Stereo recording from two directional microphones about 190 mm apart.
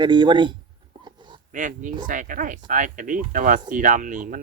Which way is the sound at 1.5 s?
45° right (ahead or behind).